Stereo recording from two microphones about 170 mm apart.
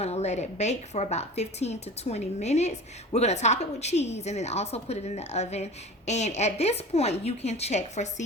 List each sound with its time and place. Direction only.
0.0 s a woman's voice: 40° left (ahead or behind)